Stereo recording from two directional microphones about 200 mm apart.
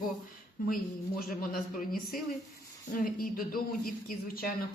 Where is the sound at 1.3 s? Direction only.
45° left (ahead or behind).